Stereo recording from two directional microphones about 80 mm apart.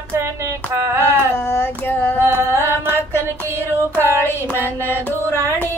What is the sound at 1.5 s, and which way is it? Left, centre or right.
Child singing, left.